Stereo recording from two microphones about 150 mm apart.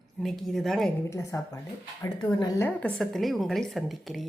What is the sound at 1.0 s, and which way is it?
Speech, 20° left (ahead or behind).